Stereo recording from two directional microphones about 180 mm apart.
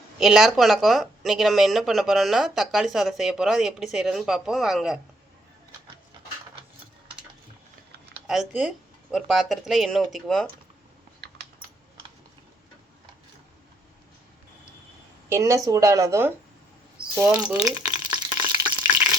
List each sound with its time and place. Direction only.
0.2 s speech: centre (ahead or behind)
8.3 s speech: centre (ahead or behind)
15.3 s speech: 15° right (ahead or behind)
18.4 s water: 10° right (ahead or behind)